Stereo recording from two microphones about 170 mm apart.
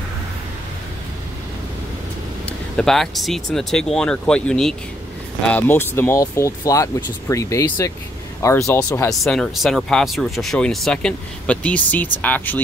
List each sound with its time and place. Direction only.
2.7 s speech: 5° left (ahead or behind)
9.2 s speech: centre (ahead or behind)